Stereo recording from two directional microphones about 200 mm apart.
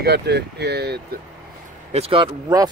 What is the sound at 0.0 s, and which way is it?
Speech, 55° right (ahead or behind).